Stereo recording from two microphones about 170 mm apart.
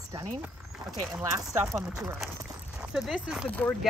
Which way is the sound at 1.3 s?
15° right (ahead or behind).